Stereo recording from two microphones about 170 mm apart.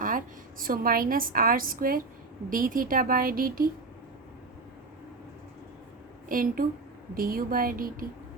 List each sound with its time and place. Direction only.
0.6 s a woman's voice: 60° right (ahead or behind)
6.2 s a woman's voice: 55° right (ahead or behind)